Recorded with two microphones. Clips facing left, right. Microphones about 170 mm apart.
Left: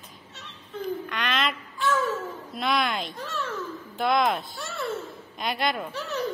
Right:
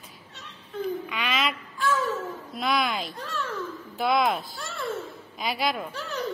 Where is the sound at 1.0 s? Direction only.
5° right (ahead or behind).